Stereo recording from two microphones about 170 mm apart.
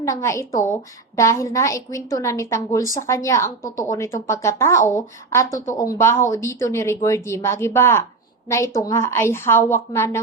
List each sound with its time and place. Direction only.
0.0 s a woman's voice: 20° left (ahead or behind)